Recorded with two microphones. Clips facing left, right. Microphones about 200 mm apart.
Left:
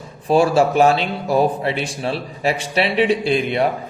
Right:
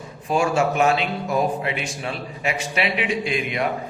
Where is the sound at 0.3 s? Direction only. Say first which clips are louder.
Left 5 dB; 35° left (ahead or behind).